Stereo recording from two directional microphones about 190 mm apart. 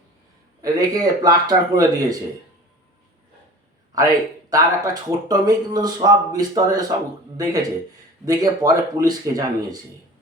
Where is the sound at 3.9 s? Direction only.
20° right (ahead or behind).